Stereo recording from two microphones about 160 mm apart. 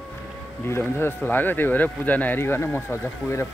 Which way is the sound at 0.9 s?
15° left (ahead or behind).